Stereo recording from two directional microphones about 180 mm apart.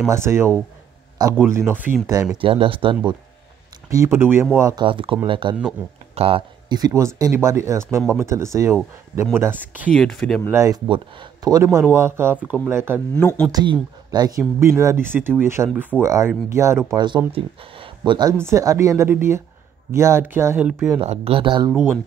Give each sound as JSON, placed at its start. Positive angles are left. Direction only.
{"t": 0.1, "sound": "speech", "side_deg": -15}
{"t": 2.4, "sound": "speech", "side_deg": -30}
{"t": 3.9, "sound": "speech", "side_deg": -15}
{"t": 4.8, "sound": "speech", "side_deg": -30}
{"t": 5.8, "sound": "speech", "side_deg": -15}
{"t": 6.1, "sound": "speech", "side_deg": -30}
{"t": 9.8, "sound": "speech", "side_deg": 5}
{"t": 10.5, "sound": "speech", "side_deg": -15}
{"t": 13.1, "sound": "speech", "side_deg": 10}
{"t": 13.5, "sound": "speech", "side_deg": -25}
{"t": 21.0, "sound": "speech", "side_deg": -35}